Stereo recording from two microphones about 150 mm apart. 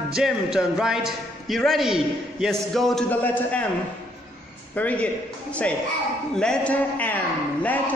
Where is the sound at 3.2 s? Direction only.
10° left (ahead or behind).